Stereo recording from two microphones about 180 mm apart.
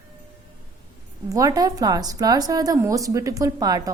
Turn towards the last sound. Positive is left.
turn(degrees=-20)  # may be behind; listen again after turning